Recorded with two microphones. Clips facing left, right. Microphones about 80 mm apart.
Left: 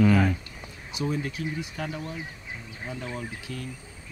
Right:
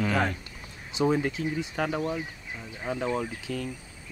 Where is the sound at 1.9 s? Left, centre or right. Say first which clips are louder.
Right 6 dB; right.